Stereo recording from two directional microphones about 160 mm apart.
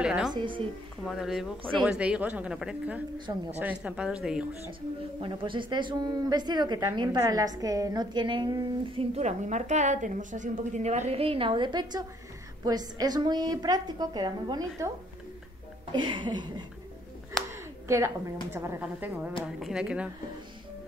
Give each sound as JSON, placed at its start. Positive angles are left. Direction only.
{"t": 0.0, "sound": "music", "side_deg": -5}
{"t": 0.3, "sound": "a woman's voice", "side_deg": -30}
{"t": 1.0, "sound": "speech", "side_deg": 0}
{"t": 5.2, "sound": "a woman's voice", "side_deg": -30}
{"t": 15.9, "sound": "a woman's voice", "side_deg": -30}
{"t": 17.5, "sound": "a woman's voice", "side_deg": -15}